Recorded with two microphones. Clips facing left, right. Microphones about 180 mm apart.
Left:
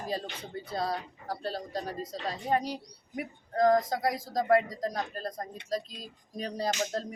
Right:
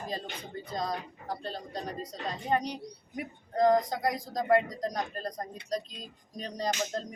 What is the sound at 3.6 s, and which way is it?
Speech, 20° right (ahead or behind).